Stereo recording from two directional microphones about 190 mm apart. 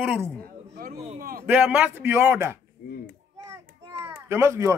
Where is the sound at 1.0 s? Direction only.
35° right (ahead or behind).